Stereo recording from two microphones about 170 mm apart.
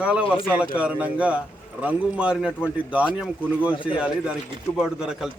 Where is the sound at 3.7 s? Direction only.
30° left (ahead or behind).